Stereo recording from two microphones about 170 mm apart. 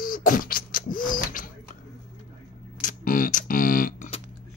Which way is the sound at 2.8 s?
55° left (ahead or behind).